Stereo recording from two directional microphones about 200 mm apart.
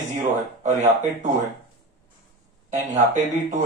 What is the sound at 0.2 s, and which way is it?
A man's voice, 35° right (ahead or behind).